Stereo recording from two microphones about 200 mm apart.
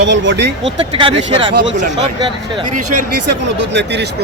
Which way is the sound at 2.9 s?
55° right (ahead or behind).